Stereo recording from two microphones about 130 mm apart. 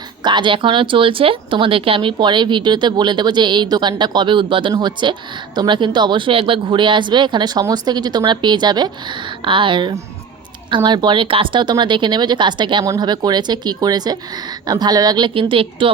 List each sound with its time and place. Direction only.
0.2 s speech: 35° right (ahead or behind)